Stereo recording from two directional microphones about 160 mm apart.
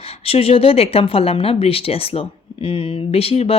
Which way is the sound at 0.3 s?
35° left (ahead or behind).